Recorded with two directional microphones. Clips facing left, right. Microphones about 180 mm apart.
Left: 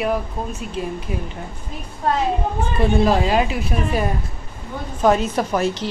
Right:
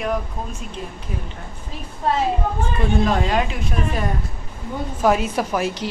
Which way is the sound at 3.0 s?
5° left (ahead or behind).